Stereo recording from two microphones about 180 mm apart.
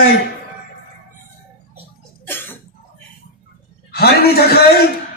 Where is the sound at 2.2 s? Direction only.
10° left (ahead or behind).